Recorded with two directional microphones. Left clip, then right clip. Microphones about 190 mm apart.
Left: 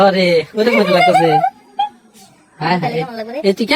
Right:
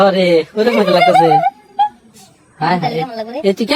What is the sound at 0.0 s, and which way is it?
A woman's voice, 20° left (ahead or behind).